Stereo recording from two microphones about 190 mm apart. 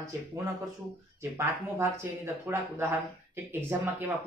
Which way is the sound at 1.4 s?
10° right (ahead or behind).